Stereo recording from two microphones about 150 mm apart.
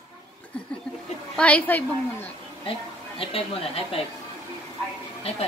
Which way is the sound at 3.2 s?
40° left (ahead or behind).